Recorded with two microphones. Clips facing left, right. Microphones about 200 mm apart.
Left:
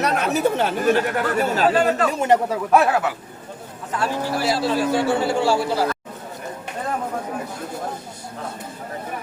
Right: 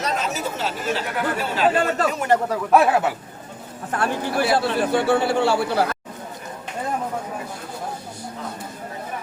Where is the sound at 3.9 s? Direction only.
60° right (ahead or behind).